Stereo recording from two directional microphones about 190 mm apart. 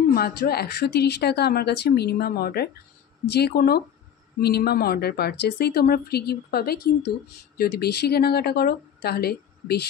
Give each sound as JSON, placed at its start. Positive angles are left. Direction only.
{"t": 0.1, "sound": "speech", "side_deg": 55}